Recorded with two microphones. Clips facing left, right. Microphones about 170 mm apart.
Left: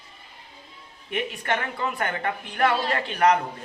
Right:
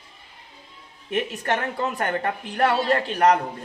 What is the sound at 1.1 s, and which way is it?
A woman's voice, 40° right (ahead or behind).